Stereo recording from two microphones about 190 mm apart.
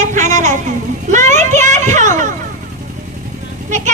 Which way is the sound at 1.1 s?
40° right (ahead or behind).